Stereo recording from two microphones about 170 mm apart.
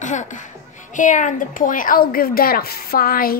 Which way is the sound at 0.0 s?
45° left (ahead or behind).